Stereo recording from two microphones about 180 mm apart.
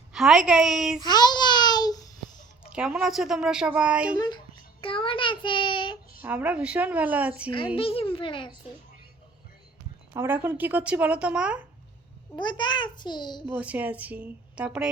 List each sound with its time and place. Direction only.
0.1 s a woman's voice: centre (ahead or behind)
1.0 s babbling: 25° left (ahead or behind)
2.6 s a woman's voice: 5° right (ahead or behind)
4.8 s child singing: 30° left (ahead or behind)
6.2 s speech: 10° right (ahead or behind)
7.8 s a child's voice: 30° left (ahead or behind)
10.1 s speech: 10° right (ahead or behind)
12.4 s a child's voice: 25° left (ahead or behind)
13.5 s speech: 10° right (ahead or behind)